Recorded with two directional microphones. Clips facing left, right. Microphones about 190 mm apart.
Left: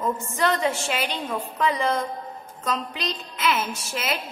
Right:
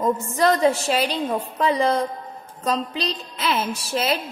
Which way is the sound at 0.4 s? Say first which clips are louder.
Right 5 dB; 35° right (ahead or behind).